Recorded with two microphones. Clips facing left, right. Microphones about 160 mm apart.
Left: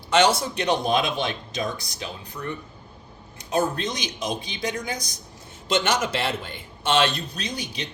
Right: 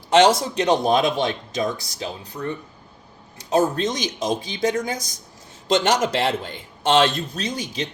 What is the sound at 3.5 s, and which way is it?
Speech, 40° right (ahead or behind).